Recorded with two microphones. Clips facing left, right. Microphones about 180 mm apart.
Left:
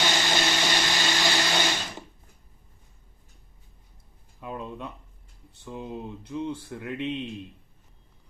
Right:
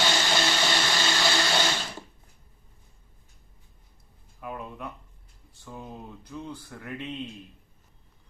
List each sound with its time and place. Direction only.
0.0 s blender: 15° left (ahead or behind)
4.4 s a sound: 25° left (ahead or behind)
5.6 s speech: 20° left (ahead or behind)